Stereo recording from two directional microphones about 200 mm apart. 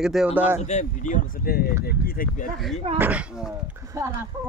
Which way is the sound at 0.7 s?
35° left (ahead or behind).